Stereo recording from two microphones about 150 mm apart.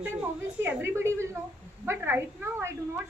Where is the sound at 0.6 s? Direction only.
15° right (ahead or behind).